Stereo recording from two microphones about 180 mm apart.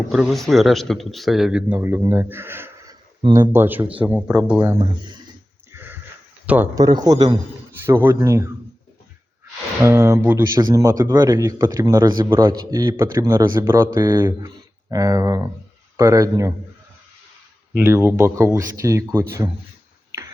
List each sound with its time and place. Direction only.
0.1 s speech: centre (ahead or behind)
5.7 s a sound: 10° right (ahead or behind)
6.7 s speech: 20° right (ahead or behind)
9.8 s speech: 15° right (ahead or behind)
17.7 s speech: 10° right (ahead or behind)